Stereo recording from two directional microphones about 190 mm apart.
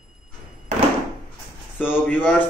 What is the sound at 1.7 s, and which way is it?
Speech, 10° left (ahead or behind).